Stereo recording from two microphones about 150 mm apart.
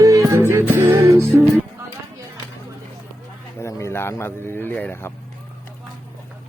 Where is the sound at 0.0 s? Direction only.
20° right (ahead or behind).